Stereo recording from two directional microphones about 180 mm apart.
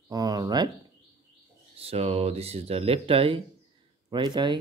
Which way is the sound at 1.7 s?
35° right (ahead or behind).